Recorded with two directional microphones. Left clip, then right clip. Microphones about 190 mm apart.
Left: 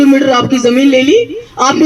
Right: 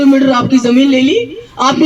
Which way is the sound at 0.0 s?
45° left (ahead or behind).